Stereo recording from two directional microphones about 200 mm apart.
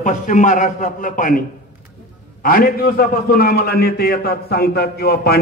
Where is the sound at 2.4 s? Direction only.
45° left (ahead or behind).